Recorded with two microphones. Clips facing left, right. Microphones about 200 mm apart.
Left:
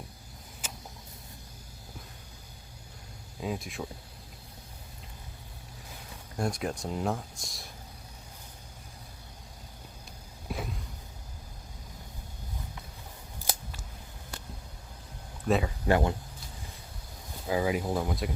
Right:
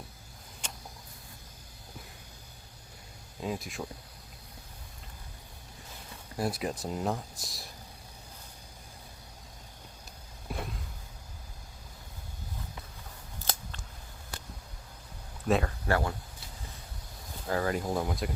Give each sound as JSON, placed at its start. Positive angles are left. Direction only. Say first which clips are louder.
{"t": 0.6, "sound": "a sound", "louder": "left 1 dB", "side_deg": 5}
{"t": 3.4, "sound": "speech", "louder": "left 1 dB", "side_deg": 0}
{"t": 6.3, "sound": "speech", "louder": "even", "side_deg": -5}
{"t": 10.5, "sound": "a sound", "louder": "left 2 dB", "side_deg": 0}
{"t": 13.4, "sound": "scissors", "louder": "left 1 dB", "side_deg": 10}
{"t": 15.4, "sound": "speech", "louder": "even", "side_deg": 0}
{"t": 15.9, "sound": "speech", "louder": "left 4 dB", "side_deg": 20}
{"t": 17.4, "sound": "speech", "louder": "left 2 dB", "side_deg": 10}